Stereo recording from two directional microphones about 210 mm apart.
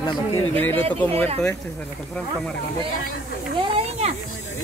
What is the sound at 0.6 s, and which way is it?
Speech, 10° left (ahead or behind).